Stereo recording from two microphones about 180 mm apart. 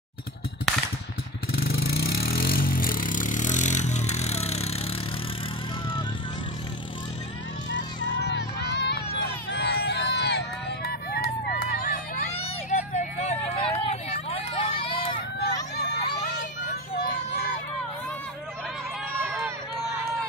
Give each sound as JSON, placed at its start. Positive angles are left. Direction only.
{"t": 1.5, "sound": "vehicle", "side_deg": 60}
{"t": 7.7, "sound": "music", "side_deg": 75}
{"t": 9.5, "sound": "a sound", "side_deg": 70}
{"t": 12.4, "sound": "vehicle", "side_deg": 40}
{"t": 15.3, "sound": "hubbub", "side_deg": 65}